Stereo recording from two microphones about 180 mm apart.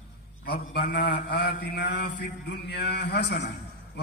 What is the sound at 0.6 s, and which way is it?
A man's voice, 60° left (ahead or behind).